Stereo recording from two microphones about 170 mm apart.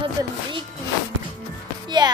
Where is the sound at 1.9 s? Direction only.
25° right (ahead or behind).